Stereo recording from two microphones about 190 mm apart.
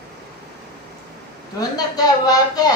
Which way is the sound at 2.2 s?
20° left (ahead or behind).